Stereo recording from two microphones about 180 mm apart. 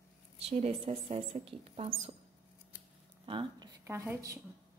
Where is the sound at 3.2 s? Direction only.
25° right (ahead or behind).